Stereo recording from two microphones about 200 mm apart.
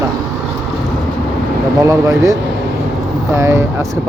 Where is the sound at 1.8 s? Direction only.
15° right (ahead or behind).